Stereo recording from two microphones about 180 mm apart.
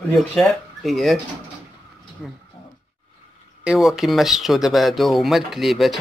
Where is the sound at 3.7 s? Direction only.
Centre (ahead or behind).